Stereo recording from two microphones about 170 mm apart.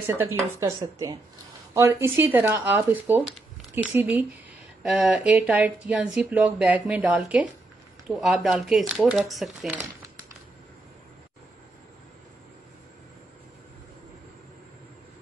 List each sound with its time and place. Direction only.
0.0 s speech: 15° right (ahead or behind)